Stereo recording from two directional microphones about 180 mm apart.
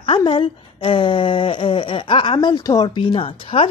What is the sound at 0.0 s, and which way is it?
Speech, 30° left (ahead or behind).